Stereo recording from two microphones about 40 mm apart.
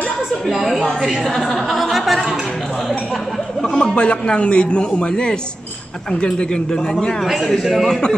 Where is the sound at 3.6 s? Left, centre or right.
Left.